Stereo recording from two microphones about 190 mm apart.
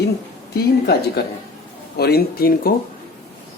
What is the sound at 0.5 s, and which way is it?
Speech, 55° left (ahead or behind).